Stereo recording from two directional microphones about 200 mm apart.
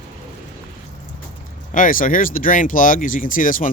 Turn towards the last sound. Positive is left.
turn(degrees=40)  # may be behind; listen again after turning